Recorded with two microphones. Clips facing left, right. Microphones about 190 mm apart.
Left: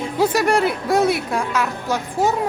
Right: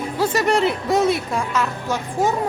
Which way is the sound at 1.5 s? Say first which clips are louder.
Left 1 dB; 10° left (ahead or behind).